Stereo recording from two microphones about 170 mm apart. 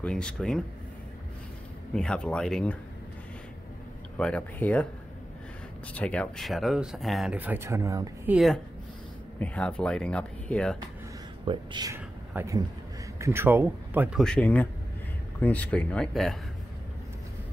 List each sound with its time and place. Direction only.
0.0 s speech: 5° left (ahead or behind)
2.0 s speech: 5° left (ahead or behind)
4.2 s speech: 5° left (ahead or behind)
5.9 s speech: 5° left (ahead or behind); by 8.4 s 20° right (ahead or behind)
9.4 s speech: 5° left (ahead or behind)
11.4 s speech: 25° right (ahead or behind)
14.2 s speech: 5° left (ahead or behind)